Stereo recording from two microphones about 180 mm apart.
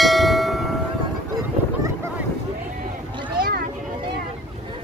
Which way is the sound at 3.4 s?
60° right (ahead or behind).